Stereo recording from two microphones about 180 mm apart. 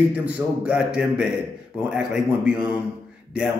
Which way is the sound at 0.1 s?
5° right (ahead or behind).